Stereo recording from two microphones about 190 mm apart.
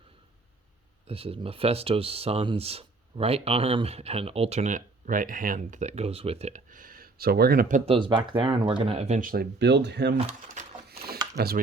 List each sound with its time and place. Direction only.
1.0 s speech: 30° right (ahead or behind); by 7.8 s 50° right (ahead or behind)
7.9 s speech: 25° right (ahead or behind); by 10.2 s 65° right (ahead or behind)
10.2 s speech: 40° right (ahead or behind)
10.8 s a sound: 55° right (ahead or behind)
11.3 s speech: 55° right (ahead or behind)